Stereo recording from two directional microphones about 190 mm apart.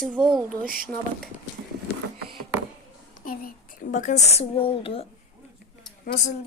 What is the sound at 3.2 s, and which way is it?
A woman's voice, 45° left (ahead or behind).